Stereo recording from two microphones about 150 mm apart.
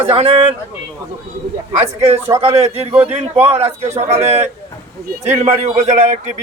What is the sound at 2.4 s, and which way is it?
Speech, 40° right (ahead or behind).